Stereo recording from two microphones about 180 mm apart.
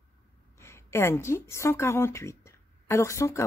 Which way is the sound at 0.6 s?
15° left (ahead or behind).